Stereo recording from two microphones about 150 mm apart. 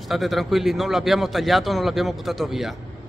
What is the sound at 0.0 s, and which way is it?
A man's voice, centre (ahead or behind).